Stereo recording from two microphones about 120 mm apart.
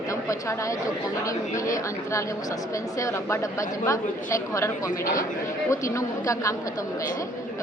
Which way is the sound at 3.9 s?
25° left (ahead or behind).